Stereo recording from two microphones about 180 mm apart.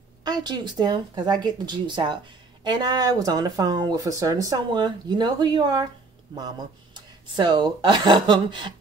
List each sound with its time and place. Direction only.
0.2 s speech: 25° right (ahead or behind)